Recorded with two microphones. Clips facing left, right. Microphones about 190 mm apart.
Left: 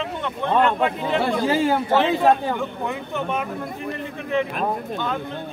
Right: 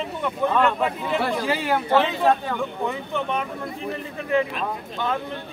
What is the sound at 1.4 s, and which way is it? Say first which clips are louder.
Speech: left 4 dB; 30° left (ahead or behind).